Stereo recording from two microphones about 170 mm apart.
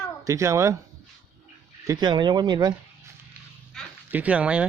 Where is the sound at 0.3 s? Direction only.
15° right (ahead or behind).